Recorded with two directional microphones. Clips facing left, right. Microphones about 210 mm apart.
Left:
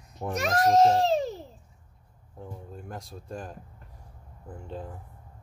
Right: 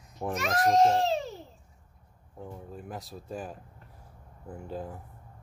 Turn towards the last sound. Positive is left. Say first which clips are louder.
# right 1 dB
turn(degrees=-5)  # may be behind; listen again after turning